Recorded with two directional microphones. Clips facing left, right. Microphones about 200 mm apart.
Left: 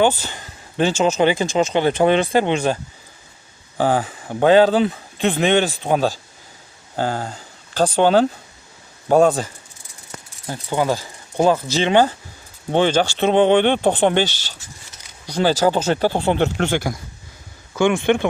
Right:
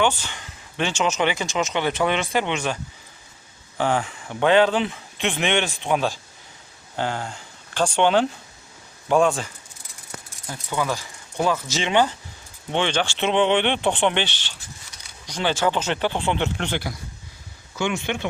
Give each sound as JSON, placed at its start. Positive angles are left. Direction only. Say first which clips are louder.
{"t": 0.0, "sound": "speech", "louder": "left 5 dB", "side_deg": 35}
{"t": 3.8, "sound": "speech", "louder": "left 4 dB", "side_deg": 35}